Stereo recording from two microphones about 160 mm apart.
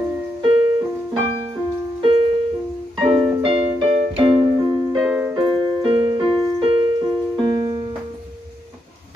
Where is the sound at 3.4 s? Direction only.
35° right (ahead or behind).